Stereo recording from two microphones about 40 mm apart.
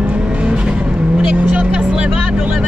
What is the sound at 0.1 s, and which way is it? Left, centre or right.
Vehicle, right.